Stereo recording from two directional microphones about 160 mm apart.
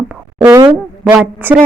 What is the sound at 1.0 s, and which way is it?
Speech, 10° right (ahead or behind).